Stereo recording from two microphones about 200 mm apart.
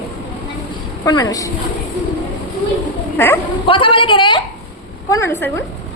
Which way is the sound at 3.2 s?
10° left (ahead or behind).